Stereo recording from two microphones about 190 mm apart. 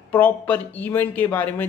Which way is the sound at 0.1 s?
10° left (ahead or behind).